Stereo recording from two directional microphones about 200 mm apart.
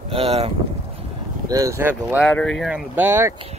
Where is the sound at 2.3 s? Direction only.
5° left (ahead or behind); by 3.3 s 10° right (ahead or behind).